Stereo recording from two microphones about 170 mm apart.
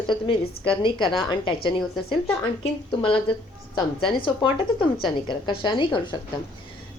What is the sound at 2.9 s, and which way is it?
Speech, 30° left (ahead or behind).